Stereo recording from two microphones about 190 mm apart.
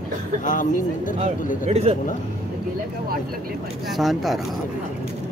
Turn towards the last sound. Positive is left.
turn(degrees=0)  # may be behind; listen again after turning